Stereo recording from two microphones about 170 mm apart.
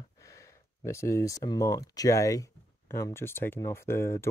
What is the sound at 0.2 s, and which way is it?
Speech, 20° left (ahead or behind).